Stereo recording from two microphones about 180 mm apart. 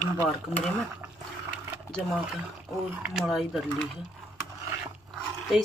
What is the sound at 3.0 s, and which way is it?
Speech, 5° right (ahead or behind).